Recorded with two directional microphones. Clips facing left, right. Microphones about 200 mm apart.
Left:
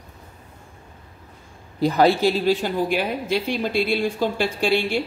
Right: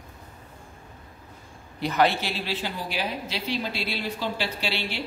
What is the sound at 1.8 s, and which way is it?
A woman's voice, 35° left (ahead or behind).